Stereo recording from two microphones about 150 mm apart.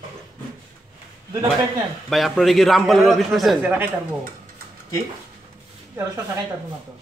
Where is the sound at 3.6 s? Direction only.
10° right (ahead or behind).